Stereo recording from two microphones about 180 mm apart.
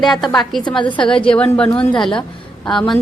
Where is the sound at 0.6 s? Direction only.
25° left (ahead or behind).